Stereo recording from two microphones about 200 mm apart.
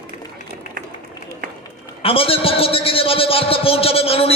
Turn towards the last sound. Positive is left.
turn(degrees=30)  # may be behind; listen again after turning